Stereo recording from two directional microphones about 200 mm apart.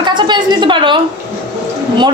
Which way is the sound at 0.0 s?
20° right (ahead or behind).